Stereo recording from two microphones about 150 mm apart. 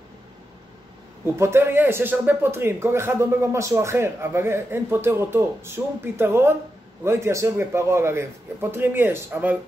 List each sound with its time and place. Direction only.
1.2 s speech: 15° right (ahead or behind)